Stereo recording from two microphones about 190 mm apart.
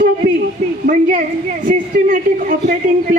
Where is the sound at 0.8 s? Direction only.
45° right (ahead or behind).